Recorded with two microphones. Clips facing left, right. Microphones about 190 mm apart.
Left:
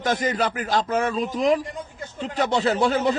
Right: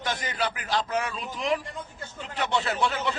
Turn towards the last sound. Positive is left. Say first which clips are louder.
# left 7 dB
turn(degrees=40)  # may be behind; listen again after turning